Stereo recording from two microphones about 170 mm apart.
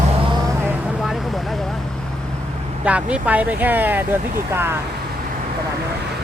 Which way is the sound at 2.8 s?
5° right (ahead or behind).